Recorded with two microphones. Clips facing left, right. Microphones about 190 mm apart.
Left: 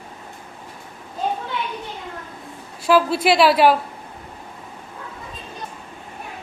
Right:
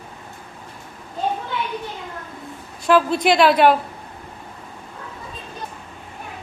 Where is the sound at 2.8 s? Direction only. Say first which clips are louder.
Even; 5° left (ahead or behind).